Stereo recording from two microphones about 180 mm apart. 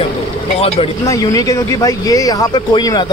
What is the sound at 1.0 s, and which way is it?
Speech, 20° left (ahead or behind).